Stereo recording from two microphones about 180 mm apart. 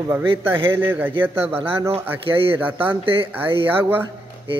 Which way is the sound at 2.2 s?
30° right (ahead or behind).